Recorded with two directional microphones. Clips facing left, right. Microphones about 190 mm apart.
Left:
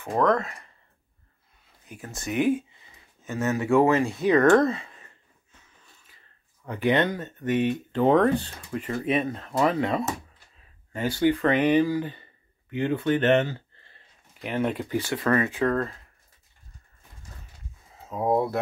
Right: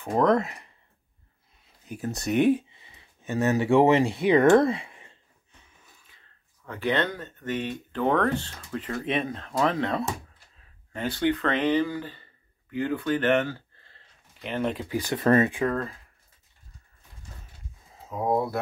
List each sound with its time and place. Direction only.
0.0 s speech: 15° right (ahead or behind)
2.0 s speech: 40° right (ahead or behind)
2.5 s a sound: 20° right (ahead or behind)
3.7 s speech: 25° right (ahead or behind)
4.6 s a sound: 15° right (ahead or behind)
6.6 s speech: 15° left (ahead or behind)
14.4 s speech: 5° left (ahead or behind)
15.0 s speech: 15° right (ahead or behind)
15.2 s speech: 30° right (ahead or behind)